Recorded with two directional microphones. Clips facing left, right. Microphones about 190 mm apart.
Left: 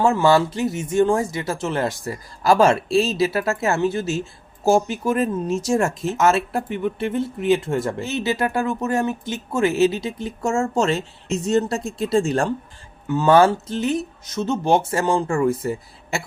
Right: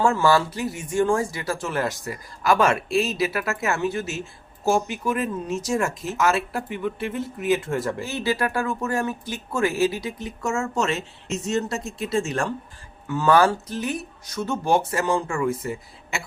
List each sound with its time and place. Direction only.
0.0 s speech: 20° left (ahead or behind)
13.1 s speech: 20° left (ahead or behind)